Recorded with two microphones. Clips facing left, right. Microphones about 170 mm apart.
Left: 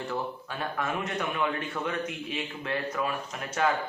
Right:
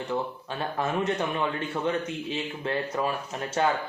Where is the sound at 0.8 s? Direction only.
30° right (ahead or behind).